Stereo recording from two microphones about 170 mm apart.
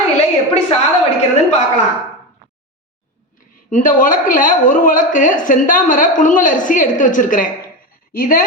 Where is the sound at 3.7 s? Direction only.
50° left (ahead or behind).